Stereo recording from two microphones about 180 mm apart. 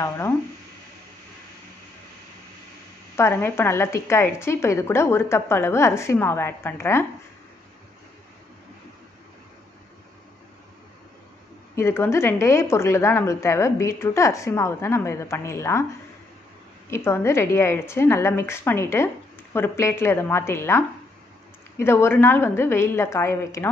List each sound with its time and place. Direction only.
3.2 s speech: 15° left (ahead or behind)
11.7 s speech: 15° left (ahead or behind)
16.9 s speech: 15° left (ahead or behind)